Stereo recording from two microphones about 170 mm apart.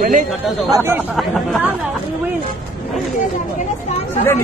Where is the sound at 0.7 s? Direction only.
15° right (ahead or behind).